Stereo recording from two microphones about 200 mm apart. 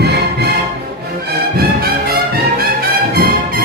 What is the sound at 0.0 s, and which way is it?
Music, 55° right (ahead or behind).